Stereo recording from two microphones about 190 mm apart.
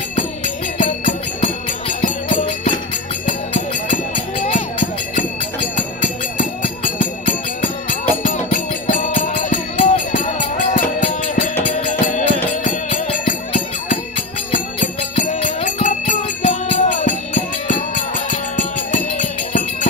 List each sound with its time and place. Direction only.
1.0 s music: 40° left (ahead or behind)
2.4 s music: 30° left (ahead or behind)
3.3 s music: 40° left (ahead or behind)
7.0 s music: 45° left (ahead or behind)
14.5 s music: 40° left (ahead or behind)